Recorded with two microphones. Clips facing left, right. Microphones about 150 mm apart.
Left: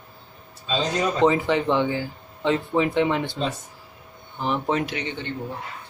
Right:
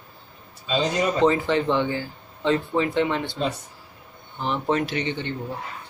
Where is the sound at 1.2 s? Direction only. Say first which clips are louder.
Left 1 dB; 15° left (ahead or behind).